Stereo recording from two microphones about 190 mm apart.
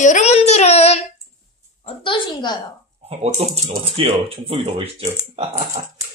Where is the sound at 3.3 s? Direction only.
30° right (ahead or behind).